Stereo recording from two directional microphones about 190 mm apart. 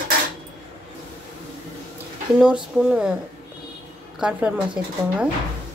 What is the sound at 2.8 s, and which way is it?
Speech, 5° right (ahead or behind).